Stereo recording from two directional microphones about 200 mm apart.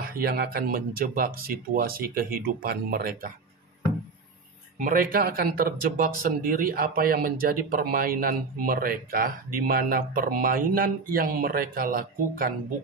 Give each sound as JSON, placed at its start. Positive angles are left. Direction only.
{"t": 0.0, "sound": "speech", "side_deg": -50}
{"t": 4.7, "sound": "speech", "side_deg": -40}